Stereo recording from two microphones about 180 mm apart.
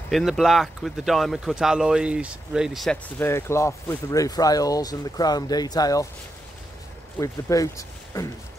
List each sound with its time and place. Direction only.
0.1 s speech: centre (ahead or behind)
3.2 s speech: 15° left (ahead or behind)
7.2 s speech: 20° left (ahead or behind)